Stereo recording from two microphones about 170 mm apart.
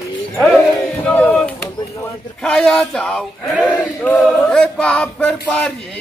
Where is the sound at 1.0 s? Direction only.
5° left (ahead or behind).